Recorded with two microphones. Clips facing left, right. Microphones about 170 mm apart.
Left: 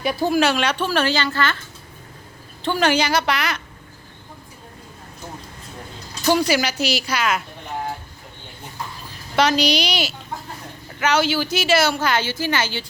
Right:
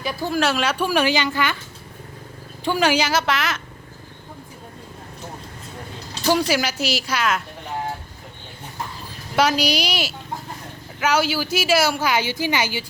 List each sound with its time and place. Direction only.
0.1 s speech: 15° left (ahead or behind)
0.3 s speech: centre (ahead or behind)
2.6 s speech: 10° right (ahead or behind)
6.2 s speech: centre (ahead or behind)
9.3 s speech: 5° right (ahead or behind)